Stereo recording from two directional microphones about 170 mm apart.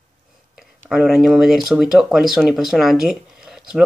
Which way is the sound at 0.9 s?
Centre (ahead or behind).